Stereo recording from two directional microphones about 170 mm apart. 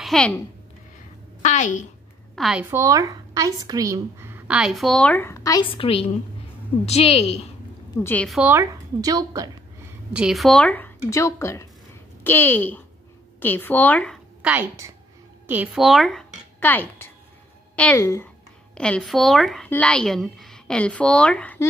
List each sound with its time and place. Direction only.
0.0 s speech: 5° left (ahead or behind)
1.4 s a woman's voice: 45° left (ahead or behind)
2.3 s a woman's voice: centre (ahead or behind)
2.7 s a woman's voice: 20° right (ahead or behind); by 5.7 s 20° left (ahead or behind)
5.7 s a woman's voice: 35° left (ahead or behind)
8.0 s a woman's voice: 10° left (ahead or behind)
8.3 s a woman's voice: 10° right (ahead or behind)
9.0 s a woman's voice: 20° right (ahead or behind)
10.1 s a woman's voice: centre (ahead or behind)
11.1 s a woman's voice: 20° left (ahead or behind)
14.4 s a woman's voice: 10° right (ahead or behind); by 18.3 s 20° left (ahead or behind)
18.8 s a woman's voice: 5° left (ahead or behind)